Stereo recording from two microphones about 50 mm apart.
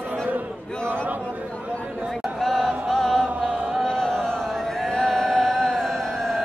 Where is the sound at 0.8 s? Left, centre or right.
Right.